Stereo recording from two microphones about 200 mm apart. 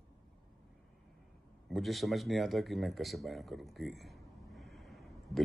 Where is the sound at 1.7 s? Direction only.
Centre (ahead or behind).